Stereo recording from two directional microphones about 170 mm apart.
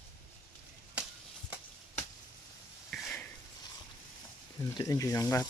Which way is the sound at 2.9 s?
Centre (ahead or behind).